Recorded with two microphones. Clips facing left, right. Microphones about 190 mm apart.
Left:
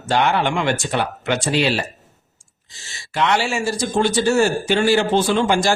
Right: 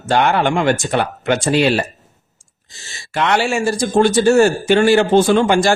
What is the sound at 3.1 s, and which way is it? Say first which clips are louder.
A man's voice: right 3 dB; 55° right (ahead or behind).